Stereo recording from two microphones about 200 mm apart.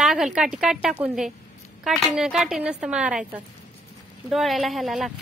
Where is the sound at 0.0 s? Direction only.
Centre (ahead or behind).